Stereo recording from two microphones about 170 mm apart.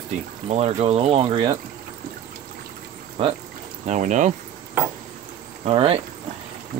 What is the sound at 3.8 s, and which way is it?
Speech, 45° right (ahead or behind).